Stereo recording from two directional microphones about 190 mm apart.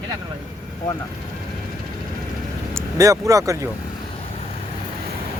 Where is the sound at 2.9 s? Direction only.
15° right (ahead or behind).